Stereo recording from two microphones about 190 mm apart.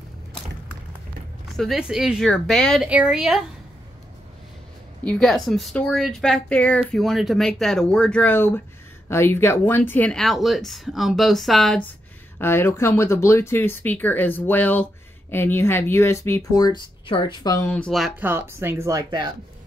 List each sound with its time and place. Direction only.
1.6 s speech: centre (ahead or behind)
5.0 s speech: centre (ahead or behind)
18.2 s speech: 10° right (ahead or behind)